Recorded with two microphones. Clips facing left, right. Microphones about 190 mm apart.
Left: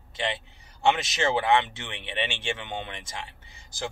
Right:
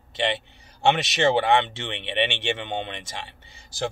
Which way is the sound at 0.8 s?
30° right (ahead or behind).